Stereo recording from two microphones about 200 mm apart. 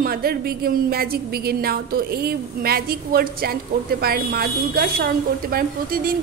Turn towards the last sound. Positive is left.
turn(degrees=-45)  # may be behind; listen again after turning